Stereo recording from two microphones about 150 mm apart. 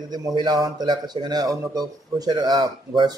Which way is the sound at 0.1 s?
30° right (ahead or behind).